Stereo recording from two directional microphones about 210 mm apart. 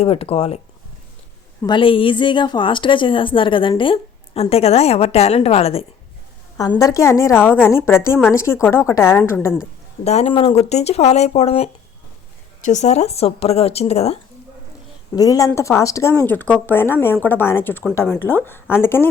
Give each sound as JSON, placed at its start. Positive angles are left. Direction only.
{"t": 0.0, "sound": "a woman's voice", "side_deg": 30}
{"t": 1.6, "sound": "a woman's voice", "side_deg": 25}
{"t": 6.6, "sound": "speech", "side_deg": 15}
{"t": 10.0, "sound": "a woman's voice", "side_deg": 30}
{"t": 15.1, "sound": "speech", "side_deg": 15}